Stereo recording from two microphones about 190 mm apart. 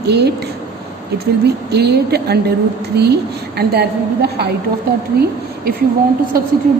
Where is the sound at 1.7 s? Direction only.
60° right (ahead or behind).